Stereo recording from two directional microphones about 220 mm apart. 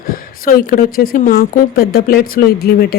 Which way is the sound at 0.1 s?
40° left (ahead or behind).